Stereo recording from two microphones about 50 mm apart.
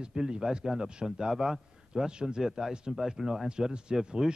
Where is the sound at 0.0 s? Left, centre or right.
Centre.